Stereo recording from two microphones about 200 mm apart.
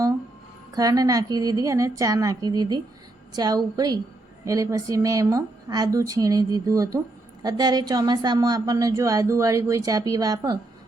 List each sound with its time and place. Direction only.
0.7 s a woman's voice: 20° right (ahead or behind)